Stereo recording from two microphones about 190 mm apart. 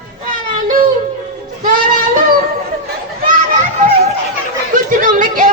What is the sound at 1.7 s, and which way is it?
Child singing, 45° right (ahead or behind).